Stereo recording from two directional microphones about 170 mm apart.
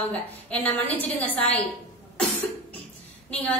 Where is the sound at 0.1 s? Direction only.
10° left (ahead or behind).